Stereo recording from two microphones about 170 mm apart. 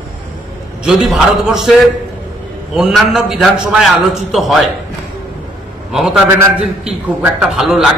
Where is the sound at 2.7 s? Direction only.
Centre (ahead or behind).